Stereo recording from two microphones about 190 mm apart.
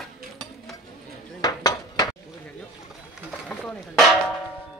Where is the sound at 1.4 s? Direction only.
20° left (ahead or behind).